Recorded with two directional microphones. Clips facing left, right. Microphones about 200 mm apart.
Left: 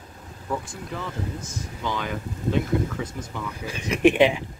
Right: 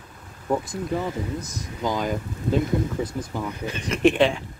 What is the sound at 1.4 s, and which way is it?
Speech, 40° right (ahead or behind).